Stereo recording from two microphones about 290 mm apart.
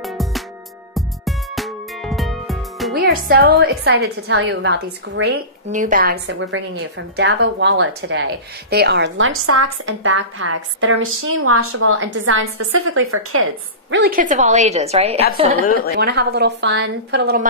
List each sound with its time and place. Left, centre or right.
0.0 s music: centre
2.9 s a woman's voice: right
15.6 s a woman's voice: left
16.0 s a woman's voice: right